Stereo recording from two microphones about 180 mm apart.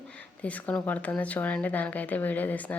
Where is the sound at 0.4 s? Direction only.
10° left (ahead or behind).